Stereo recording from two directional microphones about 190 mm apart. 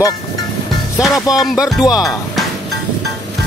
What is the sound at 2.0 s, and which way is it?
Speech, centre (ahead or behind).